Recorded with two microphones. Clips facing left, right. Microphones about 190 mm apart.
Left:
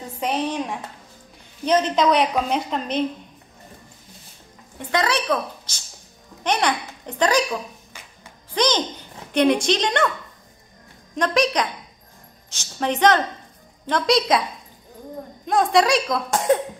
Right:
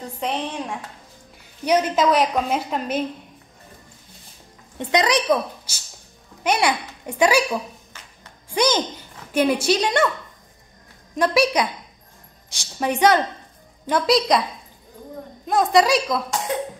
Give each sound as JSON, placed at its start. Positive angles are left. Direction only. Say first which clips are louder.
{"t": 0.2, "sound": "a woman's voice", "louder": "left 3 dB", "side_deg": 0}
{"t": 1.6, "sound": "a woman's voice", "louder": "even", "side_deg": -10}
{"t": 4.7, "sound": "a woman's voice", "louder": "right 3 dB", "side_deg": -15}
{"t": 11.1, "sound": "a woman's voice", "louder": "right 2 dB", "side_deg": -10}
{"t": 15.4, "sound": "a woman's voice", "louder": "right 1 dB", "side_deg": 0}
{"t": 16.3, "sound": "cough", "louder": "left 7 dB", "side_deg": 50}